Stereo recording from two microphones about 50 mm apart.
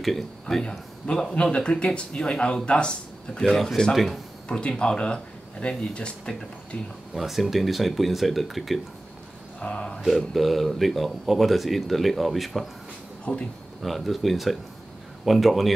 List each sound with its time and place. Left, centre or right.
0.0 s speech: centre
0.7 s speech: centre
3.4 s speech: centre
4.5 s speech: centre
7.2 s speech: centre
9.6 s speech: left
10.0 s speech: centre
13.2 s speech: left
13.8 s speech: centre